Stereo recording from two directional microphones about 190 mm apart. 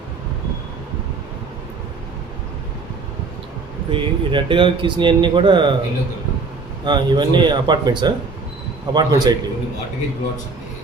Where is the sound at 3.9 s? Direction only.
25° right (ahead or behind).